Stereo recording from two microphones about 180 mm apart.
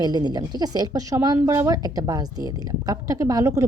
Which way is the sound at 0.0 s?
20° right (ahead or behind).